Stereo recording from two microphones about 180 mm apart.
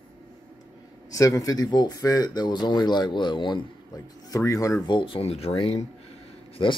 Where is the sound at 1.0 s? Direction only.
20° left (ahead or behind).